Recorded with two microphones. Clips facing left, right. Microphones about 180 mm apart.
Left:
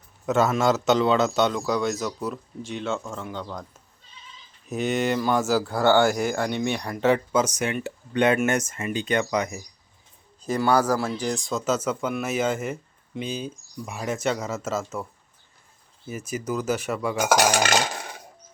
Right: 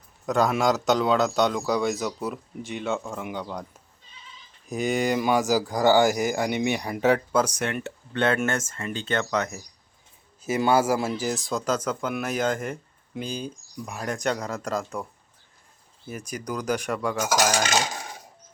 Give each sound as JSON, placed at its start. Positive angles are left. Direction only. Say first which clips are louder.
{"t": 0.3, "sound": "speech", "louder": "left 1 dB", "side_deg": 5}
{"t": 4.8, "sound": "speech", "louder": "even", "side_deg": -10}
{"t": 6.1, "sound": "speech", "louder": "even", "side_deg": 0}
{"t": 6.5, "sound": "speech", "louder": "right 1 dB", "side_deg": -15}
{"t": 7.0, "sound": "speech", "louder": "left 1 dB", "side_deg": -5}
{"t": 10.6, "sound": "speech", "louder": "even", "side_deg": -25}
{"t": 10.8, "sound": "speech", "louder": "even", "side_deg": -10}
{"t": 16.0, "sound": "speech", "louder": "left 3 dB", "side_deg": 5}
{"t": 17.2, "sound": "cutlery", "louder": "left 4 dB", "side_deg": 65}